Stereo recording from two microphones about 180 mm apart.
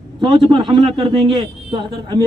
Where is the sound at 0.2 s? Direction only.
25° right (ahead or behind).